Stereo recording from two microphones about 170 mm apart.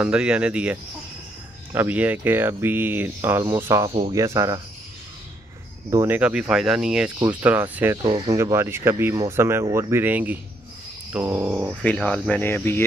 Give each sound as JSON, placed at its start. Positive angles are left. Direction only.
{"t": 0.0, "sound": "speech", "side_deg": -5}
{"t": 5.9, "sound": "speech", "side_deg": -15}
{"t": 11.8, "sound": "speech", "side_deg": 5}